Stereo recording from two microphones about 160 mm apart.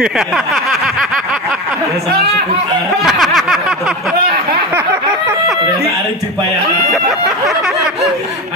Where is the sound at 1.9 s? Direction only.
75° right (ahead or behind).